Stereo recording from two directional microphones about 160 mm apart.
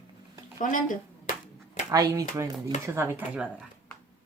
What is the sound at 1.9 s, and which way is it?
Speech, 20° right (ahead or behind).